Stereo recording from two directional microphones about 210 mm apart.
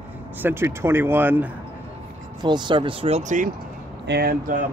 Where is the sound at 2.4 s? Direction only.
20° right (ahead or behind).